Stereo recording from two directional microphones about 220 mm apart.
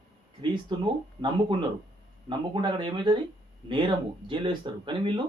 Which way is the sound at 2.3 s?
20° right (ahead or behind).